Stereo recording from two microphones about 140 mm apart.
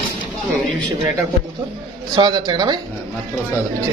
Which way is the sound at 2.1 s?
30° right (ahead or behind).